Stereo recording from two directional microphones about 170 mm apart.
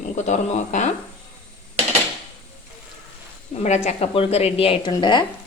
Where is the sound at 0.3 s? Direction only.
45° left (ahead or behind).